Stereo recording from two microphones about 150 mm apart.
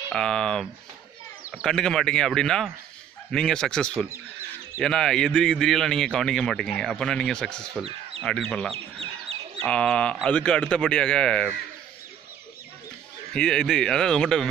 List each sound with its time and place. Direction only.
0.1 s speech: 5° left (ahead or behind)
13.3 s speech: 5° left (ahead or behind)